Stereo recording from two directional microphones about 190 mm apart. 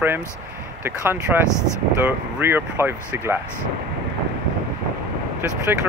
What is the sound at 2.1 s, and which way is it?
Speech, 10° right (ahead or behind).